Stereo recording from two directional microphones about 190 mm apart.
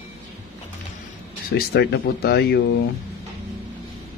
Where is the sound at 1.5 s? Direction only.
60° left (ahead or behind).